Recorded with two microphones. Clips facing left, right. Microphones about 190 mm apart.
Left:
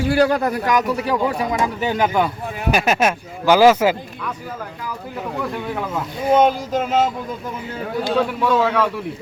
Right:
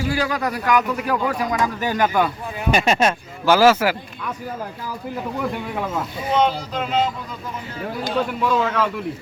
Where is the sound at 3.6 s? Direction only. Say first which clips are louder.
Left 3 dB; 20° left (ahead or behind).